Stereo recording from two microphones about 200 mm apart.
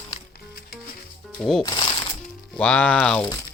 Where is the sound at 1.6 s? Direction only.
20° left (ahead or behind).